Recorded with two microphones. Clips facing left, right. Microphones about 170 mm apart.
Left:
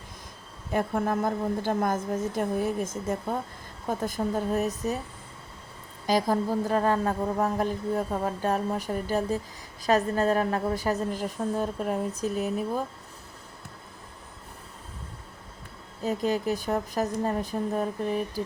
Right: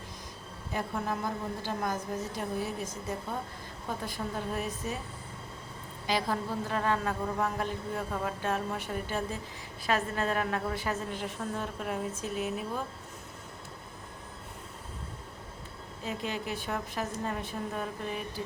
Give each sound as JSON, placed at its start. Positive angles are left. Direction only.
{"t": 0.7, "sound": "a woman's voice", "side_deg": 50}
{"t": 6.1, "sound": "a woman's voice", "side_deg": 40}
{"t": 16.0, "sound": "a woman's voice", "side_deg": 40}